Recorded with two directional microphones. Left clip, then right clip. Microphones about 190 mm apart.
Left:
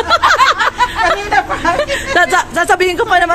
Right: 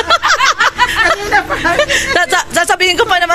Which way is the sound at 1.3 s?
50° left (ahead or behind).